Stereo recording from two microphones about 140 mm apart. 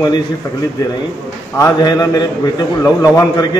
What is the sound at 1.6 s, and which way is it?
A man's voice, 30° left (ahead or behind).